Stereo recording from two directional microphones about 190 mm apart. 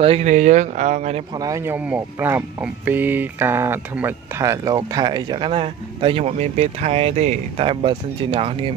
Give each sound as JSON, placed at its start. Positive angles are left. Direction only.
{"t": 0.0, "sound": "speech", "side_deg": -35}
{"t": 1.4, "sound": "speech", "side_deg": -15}